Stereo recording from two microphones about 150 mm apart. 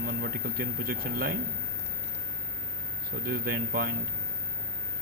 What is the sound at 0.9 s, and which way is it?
Speech, 80° right.